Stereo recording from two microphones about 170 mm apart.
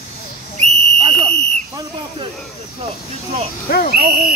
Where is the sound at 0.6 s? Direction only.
35° right (ahead or behind).